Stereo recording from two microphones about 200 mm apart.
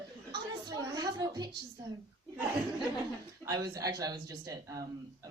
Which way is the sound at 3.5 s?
20° right (ahead or behind).